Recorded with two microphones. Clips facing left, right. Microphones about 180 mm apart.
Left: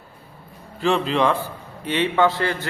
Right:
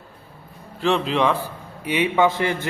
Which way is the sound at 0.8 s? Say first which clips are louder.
Even; centre (ahead or behind).